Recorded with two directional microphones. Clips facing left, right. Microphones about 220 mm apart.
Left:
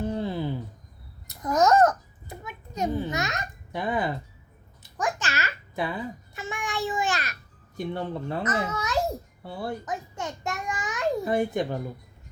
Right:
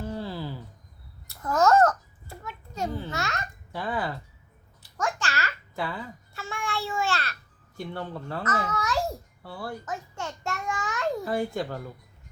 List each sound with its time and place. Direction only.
0.0 s a sound: 20° left (ahead or behind)
4.8 s babbling: 20° left (ahead or behind)
7.8 s a child's voice: 20° left (ahead or behind)